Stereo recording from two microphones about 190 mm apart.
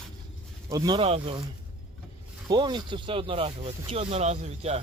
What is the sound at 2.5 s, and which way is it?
Speech, 25° right (ahead or behind).